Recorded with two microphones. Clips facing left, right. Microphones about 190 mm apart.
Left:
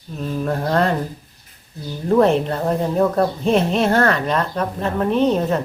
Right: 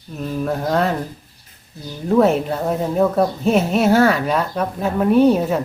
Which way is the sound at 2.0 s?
5° right (ahead or behind).